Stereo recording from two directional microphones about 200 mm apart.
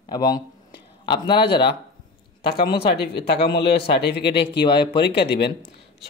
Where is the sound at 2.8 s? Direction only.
55° left (ahead or behind).